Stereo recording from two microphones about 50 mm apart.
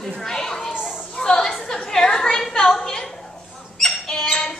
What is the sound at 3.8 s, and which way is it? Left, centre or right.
Bird, centre.